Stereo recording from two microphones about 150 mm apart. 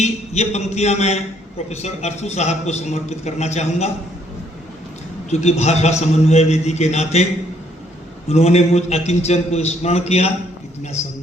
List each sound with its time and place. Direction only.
0.0 s a man's voice: 50° left (ahead or behind)
5.3 s a man's voice: 45° left (ahead or behind)
8.3 s a man's voice: 45° left (ahead or behind)